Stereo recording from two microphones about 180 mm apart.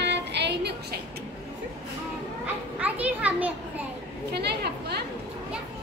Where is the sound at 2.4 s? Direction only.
5° right (ahead or behind).